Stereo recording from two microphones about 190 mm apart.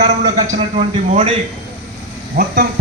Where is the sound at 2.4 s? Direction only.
50° right (ahead or behind).